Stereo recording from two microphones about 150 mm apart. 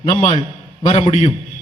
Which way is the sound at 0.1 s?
50° left (ahead or behind).